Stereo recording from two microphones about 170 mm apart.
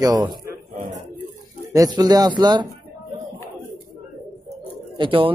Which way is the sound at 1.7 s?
20° right (ahead or behind).